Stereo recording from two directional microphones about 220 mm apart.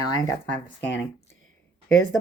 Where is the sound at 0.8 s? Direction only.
55° left (ahead or behind).